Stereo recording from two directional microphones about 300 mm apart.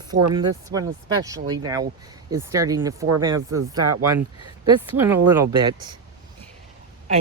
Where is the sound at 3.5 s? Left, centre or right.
Right.